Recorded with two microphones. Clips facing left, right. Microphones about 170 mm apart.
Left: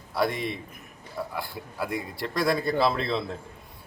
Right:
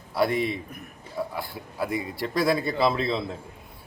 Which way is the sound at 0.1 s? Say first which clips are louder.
Right 3 dB; 5° right (ahead or behind).